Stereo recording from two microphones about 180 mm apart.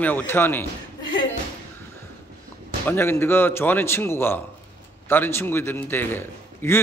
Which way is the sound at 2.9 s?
15° left (ahead or behind).